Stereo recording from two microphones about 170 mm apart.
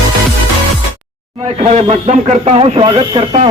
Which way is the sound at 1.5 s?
40° right (ahead or behind).